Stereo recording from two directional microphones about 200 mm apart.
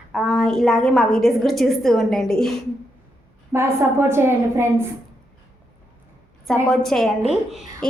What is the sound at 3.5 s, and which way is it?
A woman's voice, 15° right (ahead or behind).